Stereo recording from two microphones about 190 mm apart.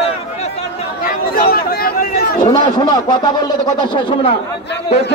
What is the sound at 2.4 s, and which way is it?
A man's voice, 20° left (ahead or behind).